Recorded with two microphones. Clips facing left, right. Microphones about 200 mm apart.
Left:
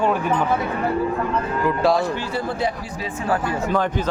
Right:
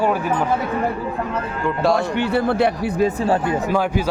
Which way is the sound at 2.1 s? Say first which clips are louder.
Right 7 dB; 65° right (ahead or behind).